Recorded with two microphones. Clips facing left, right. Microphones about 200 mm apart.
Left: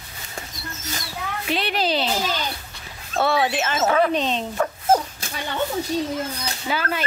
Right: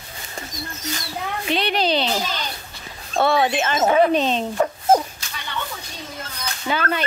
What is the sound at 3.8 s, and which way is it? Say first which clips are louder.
Speech: right 3 dB; 25° right (ahead or behind).